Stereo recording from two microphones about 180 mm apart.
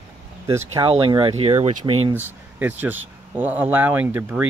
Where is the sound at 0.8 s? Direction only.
30° right (ahead or behind).